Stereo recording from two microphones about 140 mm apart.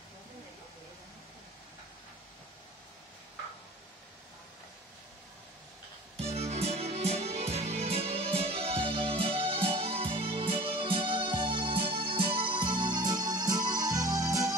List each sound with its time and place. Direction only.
6.1 s music: 50° right (ahead or behind); by 14.5 s 25° right (ahead or behind)